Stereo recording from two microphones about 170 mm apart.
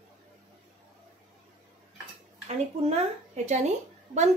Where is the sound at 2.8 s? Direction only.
40° right (ahead or behind).